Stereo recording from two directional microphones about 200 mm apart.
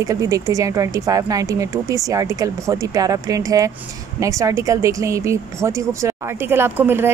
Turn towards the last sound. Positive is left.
turn(degrees=-10)  # may be behind; listen again after turning